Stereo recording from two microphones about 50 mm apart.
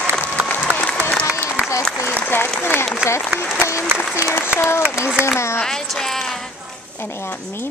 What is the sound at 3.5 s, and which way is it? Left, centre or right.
Applause, left.